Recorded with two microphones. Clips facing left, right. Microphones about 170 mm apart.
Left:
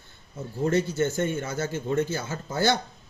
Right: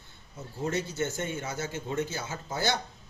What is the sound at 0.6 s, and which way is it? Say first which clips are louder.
Speech: left 7 dB; 55° left (ahead or behind).